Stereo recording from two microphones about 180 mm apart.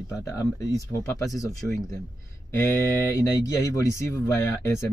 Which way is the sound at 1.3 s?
20° left (ahead or behind).